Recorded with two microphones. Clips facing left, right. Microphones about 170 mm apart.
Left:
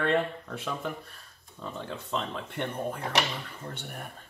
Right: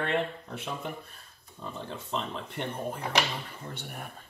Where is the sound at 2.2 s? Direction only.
55° left (ahead or behind).